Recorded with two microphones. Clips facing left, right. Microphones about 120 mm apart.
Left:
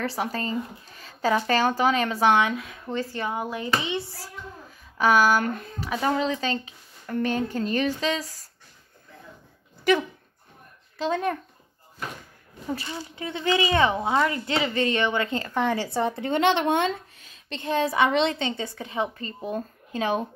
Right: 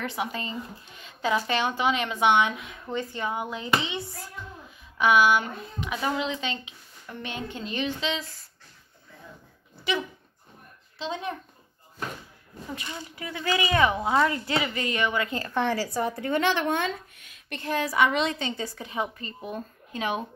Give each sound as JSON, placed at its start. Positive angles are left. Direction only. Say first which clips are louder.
{"t": 0.0, "sound": "speech", "louder": "left 3 dB", "side_deg": 35}
{"t": 2.4, "sound": "speech", "louder": "left 2 dB", "side_deg": -20}
{"t": 3.3, "sound": "a woman's voice", "louder": "left 1 dB", "side_deg": 25}
{"t": 3.5, "sound": "speech", "louder": "left 1 dB", "side_deg": -20}
{"t": 4.1, "sound": "speech", "louder": "left 1 dB", "side_deg": 35}
{"t": 9.9, "sound": "speech", "louder": "left 7 dB", "side_deg": 45}
{"t": 12.7, "sound": "a woman's voice", "louder": "left 3 dB", "side_deg": 25}